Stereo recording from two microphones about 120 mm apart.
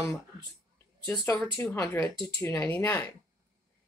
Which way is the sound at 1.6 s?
20° left (ahead or behind).